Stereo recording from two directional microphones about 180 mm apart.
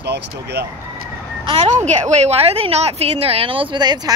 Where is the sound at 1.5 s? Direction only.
40° right (ahead or behind).